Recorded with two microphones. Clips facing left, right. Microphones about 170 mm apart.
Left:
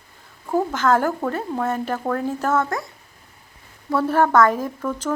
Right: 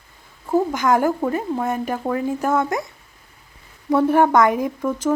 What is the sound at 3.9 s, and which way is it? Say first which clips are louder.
Speech: right 2 dB; 15° right (ahead or behind).